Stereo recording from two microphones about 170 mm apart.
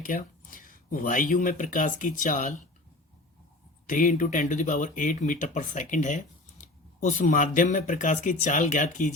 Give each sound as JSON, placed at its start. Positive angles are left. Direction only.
{"t": 0.0, "sound": "speech", "side_deg": 50}
{"t": 3.8, "sound": "speech", "side_deg": 50}